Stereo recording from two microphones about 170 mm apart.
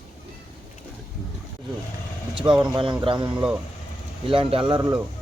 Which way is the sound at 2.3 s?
25° right (ahead or behind).